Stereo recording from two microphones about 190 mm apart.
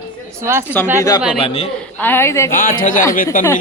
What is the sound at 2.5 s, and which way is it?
Speech, 45° left (ahead or behind).